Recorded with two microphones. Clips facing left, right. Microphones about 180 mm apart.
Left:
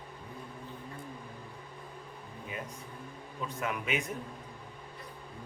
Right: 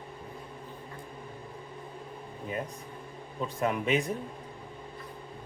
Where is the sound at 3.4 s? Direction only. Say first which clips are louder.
Right 6 dB; 30° right (ahead or behind).